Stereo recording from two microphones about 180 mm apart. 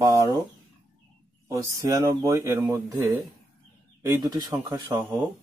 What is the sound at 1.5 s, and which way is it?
Speech, 15° right (ahead or behind).